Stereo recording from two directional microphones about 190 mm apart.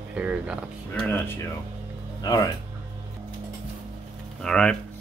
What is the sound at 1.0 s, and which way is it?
Speech, 10° left (ahead or behind).